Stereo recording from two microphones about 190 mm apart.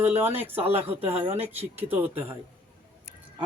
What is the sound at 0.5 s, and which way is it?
Speech, 30° right (ahead or behind).